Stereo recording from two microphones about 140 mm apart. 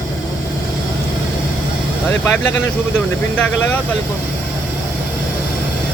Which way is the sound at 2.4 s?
5° left (ahead or behind).